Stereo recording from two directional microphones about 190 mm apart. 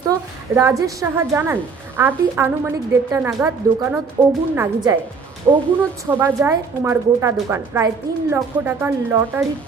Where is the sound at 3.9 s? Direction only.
Centre (ahead or behind).